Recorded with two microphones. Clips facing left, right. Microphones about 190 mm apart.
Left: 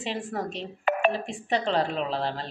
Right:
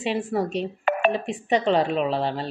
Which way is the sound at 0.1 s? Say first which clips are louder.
Right 7 dB; 15° right (ahead or behind).